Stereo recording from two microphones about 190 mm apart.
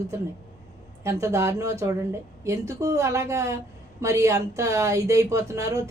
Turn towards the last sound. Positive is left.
turn(degrees=-15)  # may be behind; listen again after turning